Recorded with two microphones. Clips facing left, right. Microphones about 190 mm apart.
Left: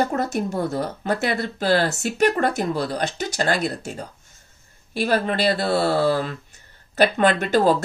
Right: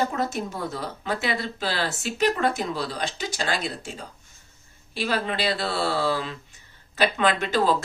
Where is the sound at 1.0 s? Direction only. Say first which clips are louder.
Left 2 dB; 45° left (ahead or behind).